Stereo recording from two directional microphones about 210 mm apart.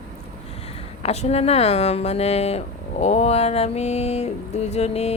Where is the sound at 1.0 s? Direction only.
30° left (ahead or behind).